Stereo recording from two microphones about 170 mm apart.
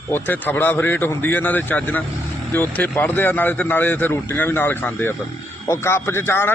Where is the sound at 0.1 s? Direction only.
10° left (ahead or behind).